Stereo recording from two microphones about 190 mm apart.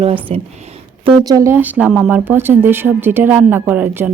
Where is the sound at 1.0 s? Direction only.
20° right (ahead or behind).